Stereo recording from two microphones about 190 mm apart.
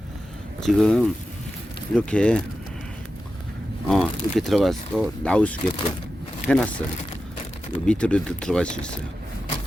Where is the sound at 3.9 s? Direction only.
Centre (ahead or behind).